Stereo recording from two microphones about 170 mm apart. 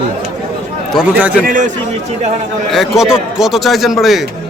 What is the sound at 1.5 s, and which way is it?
Speech, 50° right (ahead or behind).